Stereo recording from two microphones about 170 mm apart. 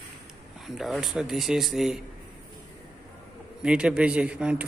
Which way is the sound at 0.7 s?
Centre (ahead or behind).